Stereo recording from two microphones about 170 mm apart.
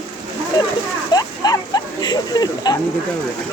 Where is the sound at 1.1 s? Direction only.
25° left (ahead or behind).